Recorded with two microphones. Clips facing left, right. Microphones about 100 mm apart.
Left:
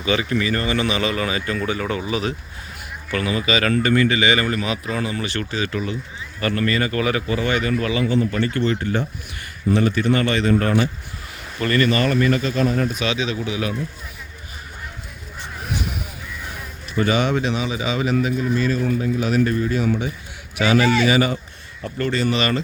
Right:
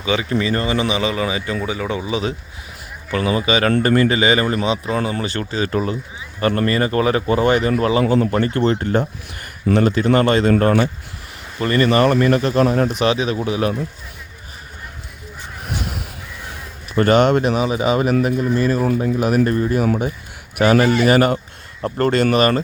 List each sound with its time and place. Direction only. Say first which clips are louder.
0.0 s speech: right 1 dB; 15° right (ahead or behind)
3.8 s speech: right 2 dB; 40° right (ahead or behind)
4.9 s speech: right 3 dB; 40° right (ahead or behind)
8.0 s speech: right 4 dB; 50° right (ahead or behind)
9.6 s a man's voice: right 3 dB; 90° right
10.2 s speech: right 4 dB; 55° right (ahead or behind)
10.6 s speech: right 4 dB; 40° right (ahead or behind)
11.6 s speech: right 2 dB; 25° right (ahead or behind)
11.9 s speech: right 4 dB; 55° right (ahead or behind)
13.1 s speech: right 5 dB; 40° right (ahead or behind)
16.9 s speech: right 6 dB; 60° right (ahead or behind)
21.8 s speech: right 6 dB; 50° right (ahead or behind)
22.1 s speech: right 4 dB; 65° right (ahead or behind)
22.4 s speech: right 6 dB; 45° right (ahead or behind)